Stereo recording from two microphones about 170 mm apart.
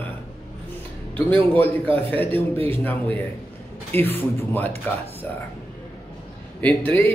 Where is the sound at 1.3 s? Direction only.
10° left (ahead or behind).